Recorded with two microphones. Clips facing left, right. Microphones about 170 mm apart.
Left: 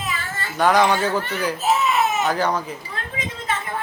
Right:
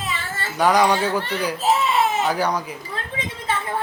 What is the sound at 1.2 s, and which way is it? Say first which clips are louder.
Speech: right 1 dB; 30° right (ahead or behind).